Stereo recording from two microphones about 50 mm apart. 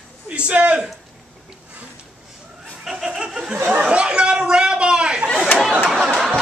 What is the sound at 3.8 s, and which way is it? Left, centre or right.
Chatter, centre.